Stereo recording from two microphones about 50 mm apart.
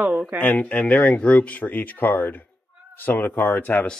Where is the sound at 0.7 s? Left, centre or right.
Left.